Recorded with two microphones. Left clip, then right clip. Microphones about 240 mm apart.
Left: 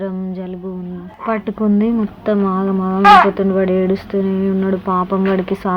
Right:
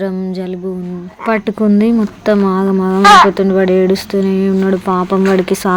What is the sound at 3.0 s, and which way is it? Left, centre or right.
Speech, right.